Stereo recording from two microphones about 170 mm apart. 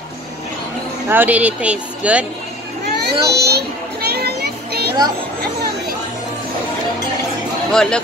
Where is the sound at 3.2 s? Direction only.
70° right (ahead or behind).